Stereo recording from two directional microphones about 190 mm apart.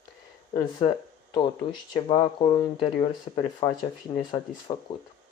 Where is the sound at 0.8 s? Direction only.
30° left (ahead or behind).